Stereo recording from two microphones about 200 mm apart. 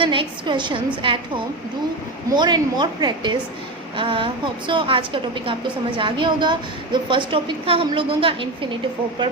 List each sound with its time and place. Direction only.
0.0 s a woman's voice: 25° right (ahead or behind)
2.3 s a woman's voice: 20° right (ahead or behind)